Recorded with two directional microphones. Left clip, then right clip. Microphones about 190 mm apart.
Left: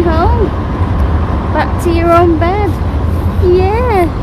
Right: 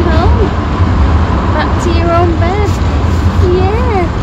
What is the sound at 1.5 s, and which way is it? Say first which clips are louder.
Vehicle: left 4 dB; 35° left (ahead or behind).